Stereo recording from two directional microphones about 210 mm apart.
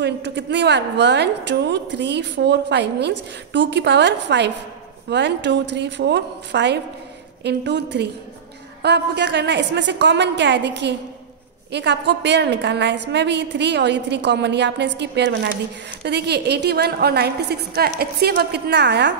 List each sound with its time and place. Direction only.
0.0 s a woman's voice: 55° right (ahead or behind)